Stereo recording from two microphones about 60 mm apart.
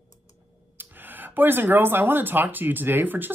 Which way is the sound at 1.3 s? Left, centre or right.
Right.